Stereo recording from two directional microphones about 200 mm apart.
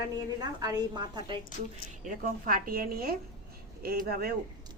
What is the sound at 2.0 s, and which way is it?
A woman's voice, 45° right (ahead or behind).